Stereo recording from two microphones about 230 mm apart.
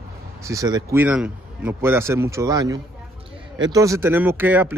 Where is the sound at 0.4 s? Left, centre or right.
Centre.